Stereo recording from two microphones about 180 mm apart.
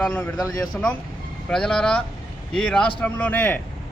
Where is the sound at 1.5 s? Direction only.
5° left (ahead or behind).